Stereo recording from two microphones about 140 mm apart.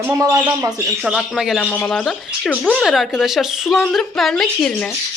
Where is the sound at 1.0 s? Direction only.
Centre (ahead or behind).